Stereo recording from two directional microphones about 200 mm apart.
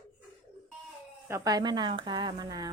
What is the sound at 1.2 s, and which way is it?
A woman's voice, 15° right (ahead or behind).